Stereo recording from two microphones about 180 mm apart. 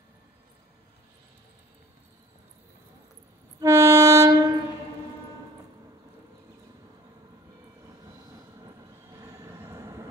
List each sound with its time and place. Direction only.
3.6 s train: 15° right (ahead or behind)
9.4 s vehicle: 15° right (ahead or behind)